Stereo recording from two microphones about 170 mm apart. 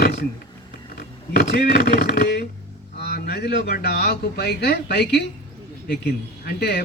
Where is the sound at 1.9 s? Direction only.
80° left.